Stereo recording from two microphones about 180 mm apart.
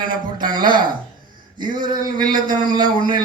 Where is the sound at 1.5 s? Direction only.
25° right (ahead or behind).